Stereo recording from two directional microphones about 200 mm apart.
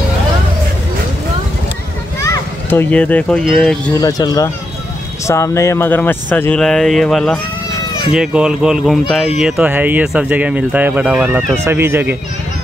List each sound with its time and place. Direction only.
2.2 s a child's voice: 15° left (ahead or behind)
3.9 s speech: 20° left (ahead or behind); by 12.2 s 10° right (ahead or behind)